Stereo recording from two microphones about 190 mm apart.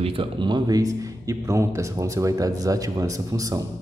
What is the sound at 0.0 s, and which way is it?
Speech, 25° right (ahead or behind).